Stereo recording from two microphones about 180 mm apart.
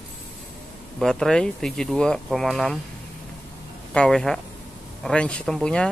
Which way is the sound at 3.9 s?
5° left (ahead or behind).